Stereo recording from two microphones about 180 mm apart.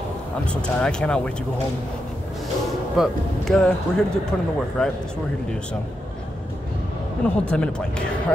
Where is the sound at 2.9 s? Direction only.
5° left (ahead or behind).